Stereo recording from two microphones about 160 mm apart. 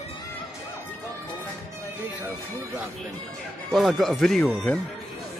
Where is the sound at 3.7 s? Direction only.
Centre (ahead or behind).